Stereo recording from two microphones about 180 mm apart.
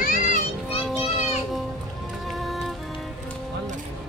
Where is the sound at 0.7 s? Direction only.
35° left (ahead or behind).